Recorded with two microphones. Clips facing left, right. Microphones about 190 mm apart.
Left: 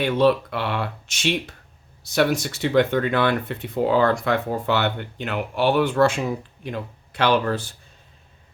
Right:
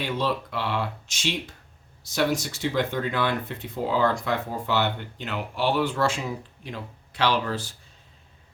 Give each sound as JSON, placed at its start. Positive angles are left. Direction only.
{"t": 0.0, "sound": "speech", "side_deg": 65}